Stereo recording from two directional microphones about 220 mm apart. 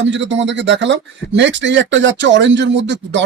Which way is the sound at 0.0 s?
55° right (ahead or behind).